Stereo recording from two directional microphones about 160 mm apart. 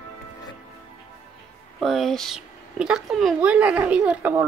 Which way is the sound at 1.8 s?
Centre (ahead or behind).